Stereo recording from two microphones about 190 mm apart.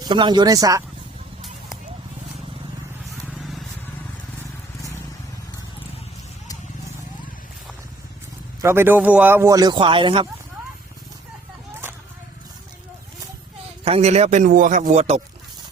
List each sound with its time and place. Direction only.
0.0 s speech: 25° right (ahead or behind)
3.2 s vehicle: centre (ahead or behind)
8.6 s speech: 10° right (ahead or behind)
13.8 s a man's voice: 35° right (ahead or behind)